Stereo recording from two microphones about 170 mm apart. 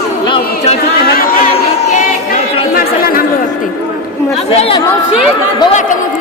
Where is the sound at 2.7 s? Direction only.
60° left (ahead or behind).